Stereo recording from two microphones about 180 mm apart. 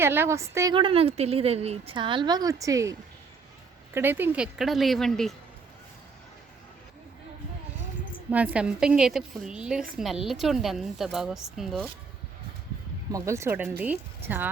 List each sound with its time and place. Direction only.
0.0 s speech: 10° right (ahead or behind)
0.8 s a woman's voice: 30° right (ahead or behind)
3.9 s a woman's voice: 10° right (ahead or behind)
8.3 s a woman's voice: 10° right (ahead or behind)
13.1 s speech: 15° right (ahead or behind)